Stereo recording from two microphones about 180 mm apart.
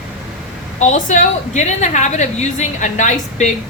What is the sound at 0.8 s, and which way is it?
A woman's voice, 40° left (ahead or behind).